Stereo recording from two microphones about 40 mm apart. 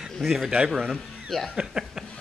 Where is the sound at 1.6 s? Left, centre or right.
Centre.